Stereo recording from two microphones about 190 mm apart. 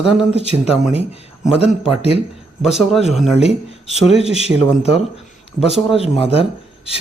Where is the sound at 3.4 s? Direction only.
35° left (ahead or behind).